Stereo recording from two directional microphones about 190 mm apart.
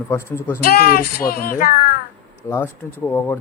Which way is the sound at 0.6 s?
55° left (ahead or behind).